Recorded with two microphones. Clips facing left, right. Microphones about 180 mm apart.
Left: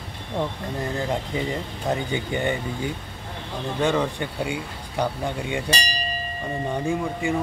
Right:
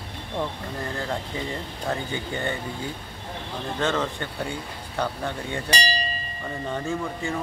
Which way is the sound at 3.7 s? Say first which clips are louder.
Left 3 dB; 15° left (ahead or behind).